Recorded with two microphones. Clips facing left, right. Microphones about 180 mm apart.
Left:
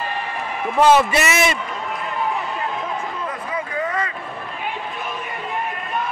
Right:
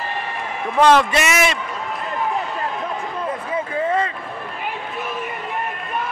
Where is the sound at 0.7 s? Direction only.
5° left (ahead or behind).